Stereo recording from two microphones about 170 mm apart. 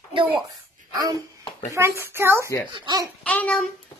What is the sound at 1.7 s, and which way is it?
Speech, 15° right (ahead or behind).